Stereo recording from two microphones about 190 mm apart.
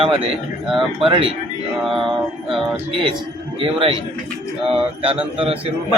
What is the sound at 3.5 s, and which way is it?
A man's voice, 30° right (ahead or behind).